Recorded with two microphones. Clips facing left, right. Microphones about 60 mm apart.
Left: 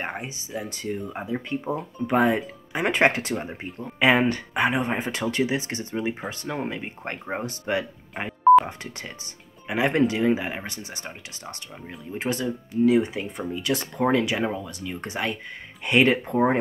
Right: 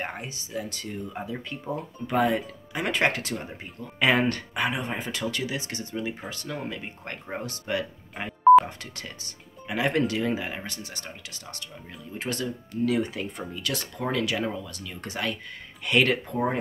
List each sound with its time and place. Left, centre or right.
0.0 s speech: centre
4.0 s speech: centre
4.6 s speech: left
8.1 s telephone dialing: centre
8.6 s speech: left
16.3 s speech: left